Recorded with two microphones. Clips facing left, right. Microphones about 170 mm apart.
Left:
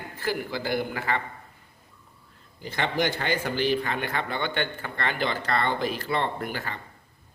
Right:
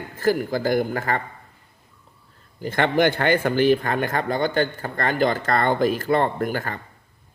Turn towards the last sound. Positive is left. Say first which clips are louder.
# right 6 dB
turn(degrees=-45)  # may be behind; listen again after turning